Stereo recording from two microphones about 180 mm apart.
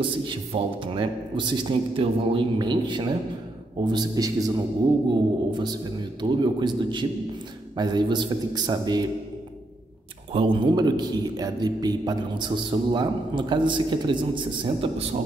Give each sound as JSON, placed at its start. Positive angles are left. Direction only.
{"t": 0.0, "sound": "a man's voice", "side_deg": -30}
{"t": 10.3, "sound": "a man's voice", "side_deg": -30}